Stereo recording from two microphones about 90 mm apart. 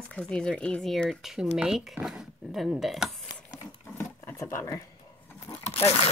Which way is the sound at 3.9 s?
30° left (ahead or behind).